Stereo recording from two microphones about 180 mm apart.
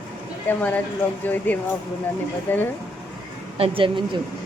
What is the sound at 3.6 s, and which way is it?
Speech, 30° right (ahead or behind).